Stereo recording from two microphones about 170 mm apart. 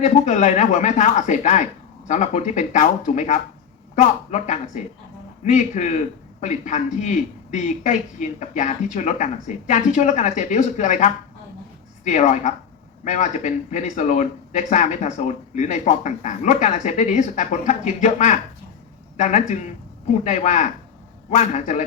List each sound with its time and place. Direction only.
0.0 s a man's voice: 45° left (ahead or behind)